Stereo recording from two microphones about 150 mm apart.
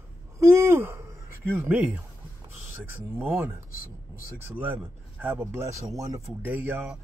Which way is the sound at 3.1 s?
15° right (ahead or behind).